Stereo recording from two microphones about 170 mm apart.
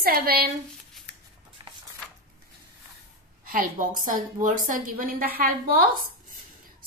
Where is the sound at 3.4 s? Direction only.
50° right (ahead or behind).